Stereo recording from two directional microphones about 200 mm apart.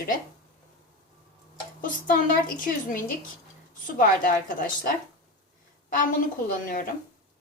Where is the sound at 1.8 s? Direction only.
40° left (ahead or behind).